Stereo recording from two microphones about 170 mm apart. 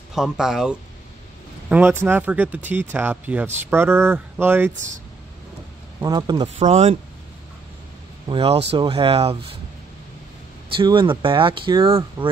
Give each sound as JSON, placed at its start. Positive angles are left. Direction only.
{"t": 0.1, "sound": "speech", "side_deg": -5}
{"t": 6.0, "sound": "speech", "side_deg": -25}
{"t": 6.6, "sound": "speech", "side_deg": -40}
{"t": 8.3, "sound": "speech", "side_deg": -35}
{"t": 10.8, "sound": "speech", "side_deg": -30}